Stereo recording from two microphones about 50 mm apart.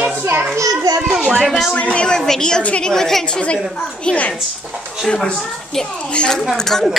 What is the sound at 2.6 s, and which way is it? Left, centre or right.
Speech, left.